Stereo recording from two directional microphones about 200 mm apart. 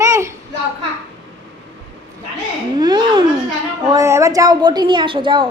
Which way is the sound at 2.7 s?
20° right (ahead or behind).